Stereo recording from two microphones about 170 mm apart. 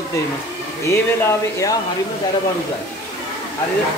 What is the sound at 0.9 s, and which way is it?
Speech, 15° left (ahead or behind).